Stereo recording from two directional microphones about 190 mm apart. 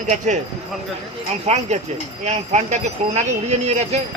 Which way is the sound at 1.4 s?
35° right (ahead or behind).